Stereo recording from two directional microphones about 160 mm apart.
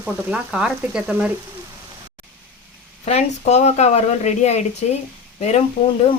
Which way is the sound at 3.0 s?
45° left (ahead or behind).